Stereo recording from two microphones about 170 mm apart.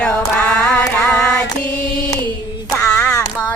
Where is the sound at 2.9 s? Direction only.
5° left (ahead or behind).